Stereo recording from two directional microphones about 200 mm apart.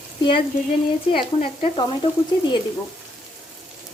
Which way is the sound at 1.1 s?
30° left (ahead or behind).